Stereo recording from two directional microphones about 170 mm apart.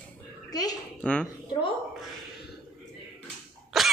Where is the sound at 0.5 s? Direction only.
20° left (ahead or behind).